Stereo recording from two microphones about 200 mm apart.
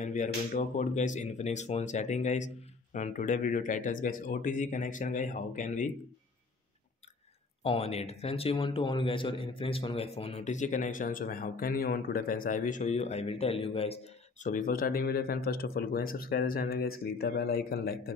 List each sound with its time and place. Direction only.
0.0 s speech: 40° left (ahead or behind)
7.6 s speech: 30° left (ahead or behind); by 18.1 s 50° left (ahead or behind)